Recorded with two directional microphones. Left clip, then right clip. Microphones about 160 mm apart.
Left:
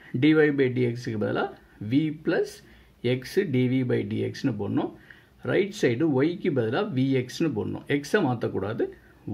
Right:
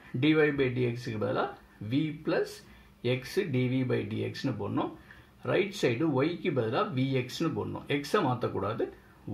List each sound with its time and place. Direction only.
0.2 s speech: 35° left (ahead or behind)